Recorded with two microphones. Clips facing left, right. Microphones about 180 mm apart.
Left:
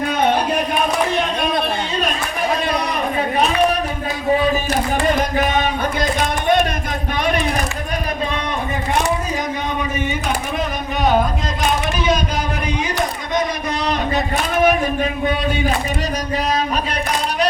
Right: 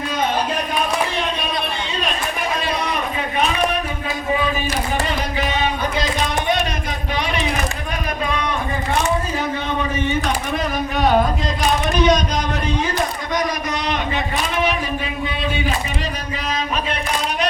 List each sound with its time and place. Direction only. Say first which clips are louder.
4.7 s speech: left 4 dB; 50° left (ahead or behind)
11.9 s speech: right 6 dB; 5° left (ahead or behind)
14.5 s a sound: left 7 dB; 50° left (ahead or behind)
15.2 s a man's voice: left 4 dB; 45° left (ahead or behind)